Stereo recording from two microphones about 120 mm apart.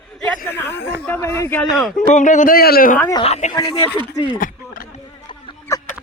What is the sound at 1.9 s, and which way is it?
Speech, 90° left.